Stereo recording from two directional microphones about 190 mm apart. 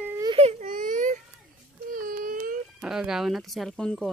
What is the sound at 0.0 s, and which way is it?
Baby cry, 15° right (ahead or behind).